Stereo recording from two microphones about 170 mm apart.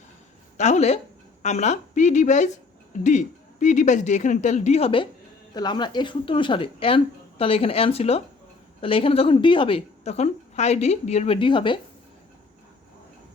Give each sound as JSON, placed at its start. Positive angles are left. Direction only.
{"t": 0.5, "sound": "a woman's voice", "side_deg": 45}